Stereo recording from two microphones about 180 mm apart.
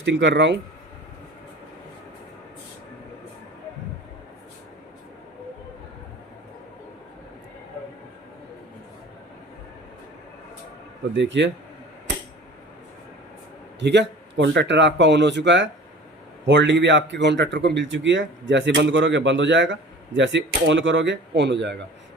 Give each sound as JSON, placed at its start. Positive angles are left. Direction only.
{"t": 0.0, "sound": "speech", "side_deg": -85}
{"t": 11.1, "sound": "speech", "side_deg": -85}
{"t": 13.7, "sound": "speech", "side_deg": -75}